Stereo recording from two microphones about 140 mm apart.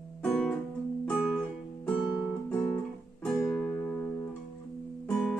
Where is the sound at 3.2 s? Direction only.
5° left (ahead or behind).